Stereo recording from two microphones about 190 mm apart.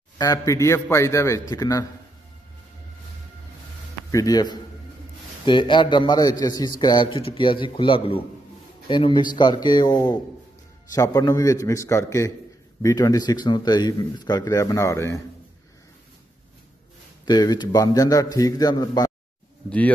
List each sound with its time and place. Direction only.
0.2 s a man's voice: 15° left (ahead or behind)
4.1 s a man's voice: 20° left (ahead or behind)
17.2 s a man's voice: 20° left (ahead or behind)